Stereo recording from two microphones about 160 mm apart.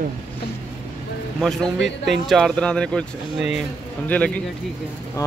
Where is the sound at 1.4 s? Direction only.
Centre (ahead or behind).